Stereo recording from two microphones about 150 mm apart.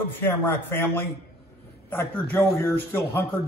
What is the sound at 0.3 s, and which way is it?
A man's voice, 15° left (ahead or behind).